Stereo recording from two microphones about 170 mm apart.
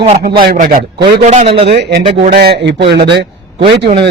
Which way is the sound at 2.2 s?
60° right (ahead or behind).